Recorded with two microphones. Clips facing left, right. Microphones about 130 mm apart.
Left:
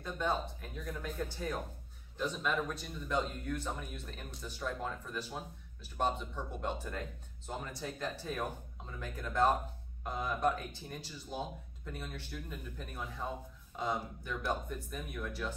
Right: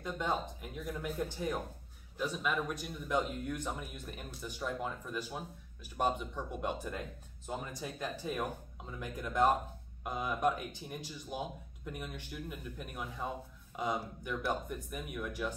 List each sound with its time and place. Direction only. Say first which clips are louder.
0.0 s speech: even; 15° right (ahead or behind)